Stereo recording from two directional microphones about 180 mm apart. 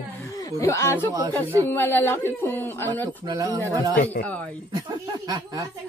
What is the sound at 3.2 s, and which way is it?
Speech, 20° right (ahead or behind).